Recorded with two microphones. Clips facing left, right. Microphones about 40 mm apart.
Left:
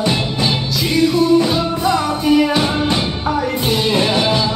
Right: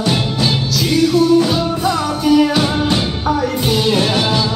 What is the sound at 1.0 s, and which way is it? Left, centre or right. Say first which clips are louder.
Music: right 1 dB; left.